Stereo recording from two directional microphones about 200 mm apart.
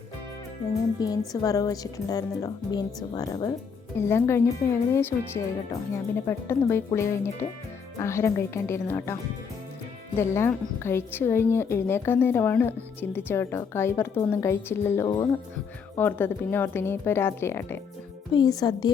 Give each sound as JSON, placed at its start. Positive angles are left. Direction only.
{"t": 0.9, "sound": "a woman's voice", "side_deg": 20}
{"t": 10.2, "sound": "a woman's voice", "side_deg": 10}